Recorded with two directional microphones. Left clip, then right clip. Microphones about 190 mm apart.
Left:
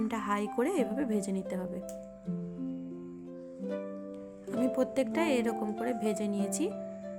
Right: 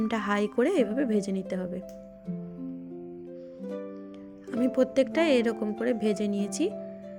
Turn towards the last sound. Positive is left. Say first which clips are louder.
# right 4 dB
turn(degrees=-10)  # may be behind; listen again after turning